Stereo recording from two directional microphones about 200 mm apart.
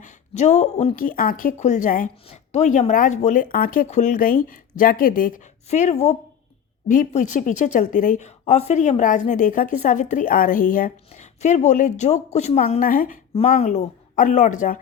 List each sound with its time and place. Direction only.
0.0 s a woman's voice: 35° left (ahead or behind)
13.3 s a woman's voice: 30° left (ahead or behind)